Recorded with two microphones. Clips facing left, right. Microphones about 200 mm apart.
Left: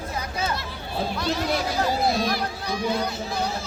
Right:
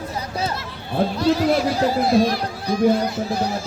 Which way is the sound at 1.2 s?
Centre (ahead or behind).